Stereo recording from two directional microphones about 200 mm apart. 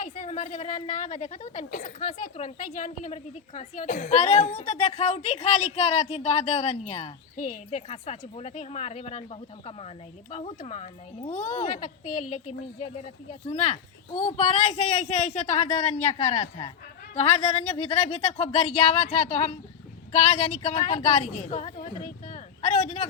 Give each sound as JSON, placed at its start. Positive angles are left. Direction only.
{"t": 0.0, "sound": "a woman's voice", "side_deg": 40}